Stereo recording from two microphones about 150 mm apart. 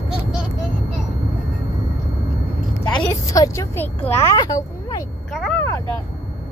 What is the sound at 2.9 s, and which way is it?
A woman's voice, 25° left (ahead or behind).